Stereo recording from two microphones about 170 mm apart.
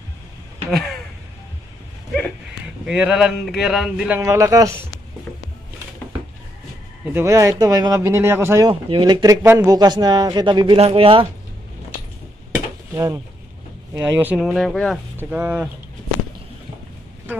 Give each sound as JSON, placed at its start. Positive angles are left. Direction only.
{"t": 0.7, "sound": "speech", "side_deg": 0}
{"t": 2.9, "sound": "speech", "side_deg": -5}
{"t": 4.2, "sound": "speech", "side_deg": -20}
{"t": 7.2, "sound": "speech", "side_deg": -15}
{"t": 8.6, "sound": "speech", "side_deg": -25}
{"t": 12.9, "sound": "speech", "side_deg": -20}
{"t": 14.4, "sound": "speech", "side_deg": 0}
{"t": 15.1, "sound": "speech", "side_deg": -10}